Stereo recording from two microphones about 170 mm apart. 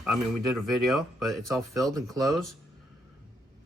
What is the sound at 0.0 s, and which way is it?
Speech, centre (ahead or behind).